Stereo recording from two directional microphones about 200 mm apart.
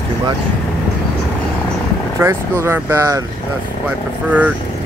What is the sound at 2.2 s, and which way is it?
Speech, 15° right (ahead or behind).